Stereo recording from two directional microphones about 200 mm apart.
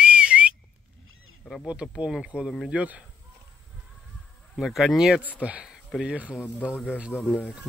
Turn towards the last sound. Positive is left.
turn(degrees=0)  # may be behind; listen again after turning